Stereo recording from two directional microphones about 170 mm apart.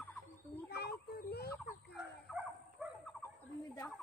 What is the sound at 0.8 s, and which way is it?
Speech, 70° left (ahead or behind).